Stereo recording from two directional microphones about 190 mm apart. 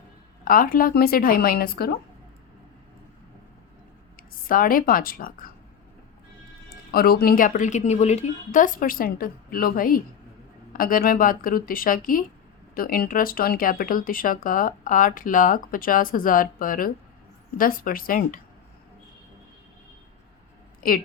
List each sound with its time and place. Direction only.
0.4 s speech: 45° left (ahead or behind)
4.2 s a woman's voice: 45° left (ahead or behind)
6.7 s speech: 50° left (ahead or behind)
20.8 s speech: 50° left (ahead or behind)